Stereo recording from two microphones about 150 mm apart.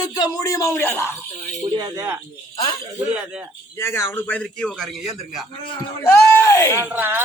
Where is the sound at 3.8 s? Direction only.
15° left (ahead or behind); by 5.5 s centre (ahead or behind).